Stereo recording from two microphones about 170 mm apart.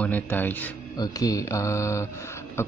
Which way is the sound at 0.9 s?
20° left (ahead or behind).